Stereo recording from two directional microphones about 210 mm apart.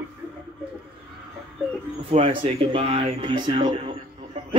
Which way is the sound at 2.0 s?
30° right (ahead or behind).